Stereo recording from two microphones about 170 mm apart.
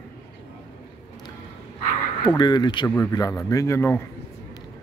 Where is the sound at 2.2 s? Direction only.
25° left (ahead or behind).